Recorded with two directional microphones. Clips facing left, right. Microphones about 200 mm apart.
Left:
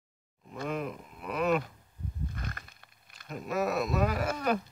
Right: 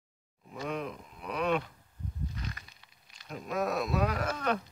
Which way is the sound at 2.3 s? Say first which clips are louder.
Left 1 dB; 55° left (ahead or behind).